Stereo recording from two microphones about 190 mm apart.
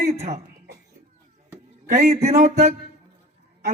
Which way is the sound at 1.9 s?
35° right (ahead or behind).